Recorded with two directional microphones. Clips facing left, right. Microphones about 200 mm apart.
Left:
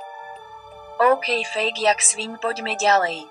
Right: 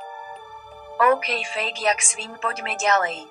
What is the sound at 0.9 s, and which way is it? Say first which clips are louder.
A woman's voice: left 2 dB; 35° left (ahead or behind).